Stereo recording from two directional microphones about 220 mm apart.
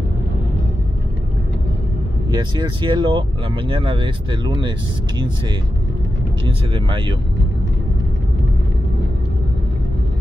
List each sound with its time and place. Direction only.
2.3 s speech: 20° right (ahead or behind)
6.4 s speech: 20° right (ahead or behind)